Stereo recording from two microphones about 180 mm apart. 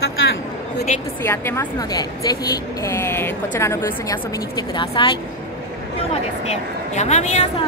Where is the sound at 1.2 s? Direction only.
15° left (ahead or behind).